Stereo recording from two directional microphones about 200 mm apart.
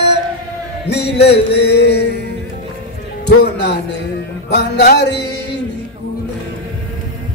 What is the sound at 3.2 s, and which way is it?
A man's voice, 55° left (ahead or behind).